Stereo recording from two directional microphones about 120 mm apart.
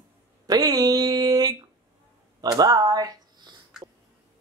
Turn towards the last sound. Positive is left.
turn(degrees=-40)  # may be behind; listen again after turning